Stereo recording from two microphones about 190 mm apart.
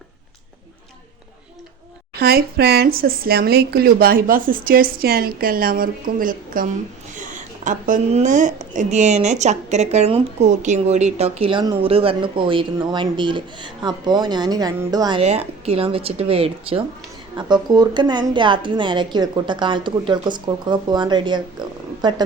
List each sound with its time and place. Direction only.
2.1 s a woman's voice: 55° right (ahead or behind); by 15.2 s 20° right (ahead or behind)
15.2 s a woman's voice: 35° right (ahead or behind)